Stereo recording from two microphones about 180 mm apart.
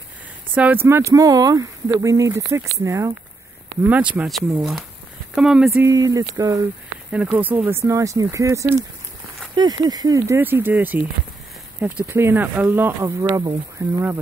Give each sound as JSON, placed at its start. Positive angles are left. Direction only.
{"t": 0.6, "sound": "speech", "side_deg": -10}
{"t": 5.8, "sound": "speech", "side_deg": -15}
{"t": 7.1, "sound": "speech", "side_deg": -5}
{"t": 12.1, "sound": "speech", "side_deg": -15}